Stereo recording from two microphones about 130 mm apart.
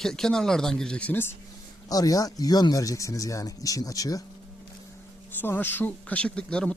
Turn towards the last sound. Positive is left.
turn(degrees=10)  # may be behind; listen again after turning